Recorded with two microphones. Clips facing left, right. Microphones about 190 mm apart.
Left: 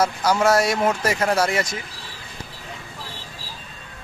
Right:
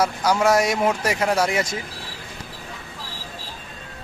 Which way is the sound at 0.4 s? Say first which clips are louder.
Even; 15° right (ahead or behind).